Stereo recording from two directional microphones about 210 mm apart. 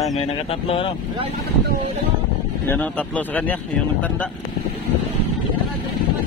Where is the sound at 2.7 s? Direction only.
5° left (ahead or behind).